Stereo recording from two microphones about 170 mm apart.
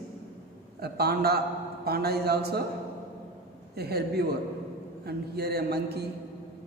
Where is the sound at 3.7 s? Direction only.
70° right (ahead or behind).